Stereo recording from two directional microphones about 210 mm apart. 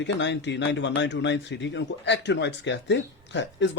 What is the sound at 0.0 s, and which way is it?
Speech, 60° left (ahead or behind).